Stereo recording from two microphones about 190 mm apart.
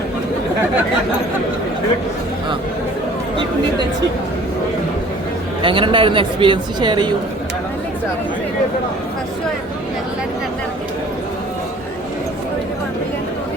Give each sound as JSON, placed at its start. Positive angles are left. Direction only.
{"t": 5.6, "sound": "speech", "side_deg": -25}